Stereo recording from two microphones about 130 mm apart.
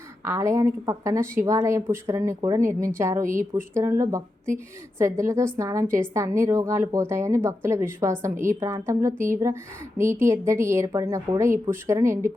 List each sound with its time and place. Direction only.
0.3 s a woman's voice: 25° right (ahead or behind)